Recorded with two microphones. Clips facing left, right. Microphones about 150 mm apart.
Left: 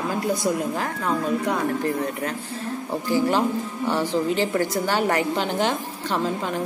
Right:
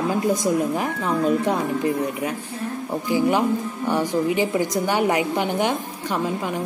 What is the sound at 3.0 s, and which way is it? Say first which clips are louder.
A woman's voice: right 2 dB; 15° right (ahead or behind).